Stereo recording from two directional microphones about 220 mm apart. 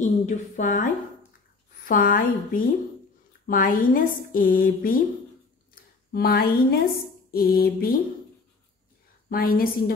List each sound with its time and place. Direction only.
0.0 s speech: 35° left (ahead or behind)
1.9 s speech: 40° left (ahead or behind)
6.1 s a woman's voice: 45° left (ahead or behind)
9.3 s speech: 40° left (ahead or behind)